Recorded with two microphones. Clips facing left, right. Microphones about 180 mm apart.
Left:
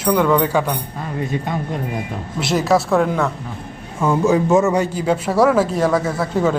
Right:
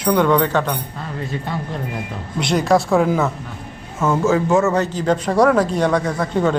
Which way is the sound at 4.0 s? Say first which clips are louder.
Left 1 dB; 15° left (ahead or behind).